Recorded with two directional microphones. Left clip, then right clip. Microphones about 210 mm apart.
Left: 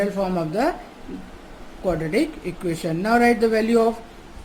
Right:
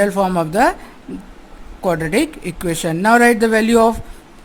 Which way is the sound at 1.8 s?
50° right (ahead or behind).